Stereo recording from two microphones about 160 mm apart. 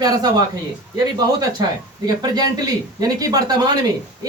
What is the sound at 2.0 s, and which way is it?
Speech, 25° right (ahead or behind).